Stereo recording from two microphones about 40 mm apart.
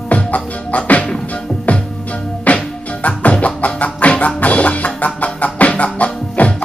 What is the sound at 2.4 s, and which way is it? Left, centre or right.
Music, left.